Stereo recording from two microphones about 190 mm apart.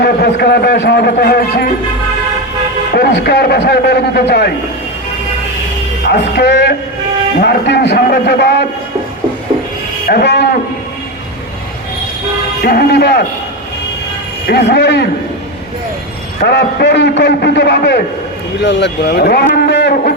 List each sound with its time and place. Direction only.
0.0 s a man's voice: 55° left (ahead or behind)
2.9 s a man's voice: 55° left (ahead or behind)
6.1 s a man's voice: 60° left (ahead or behind)
10.1 s a man's voice: 60° left (ahead or behind)
12.6 s a man's voice: 55° left (ahead or behind)
14.4 s a man's voice: 60° left (ahead or behind)
16.4 s a man's voice: 60° left (ahead or behind)